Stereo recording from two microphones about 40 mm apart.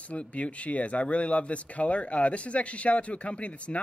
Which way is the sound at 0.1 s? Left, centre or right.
Left.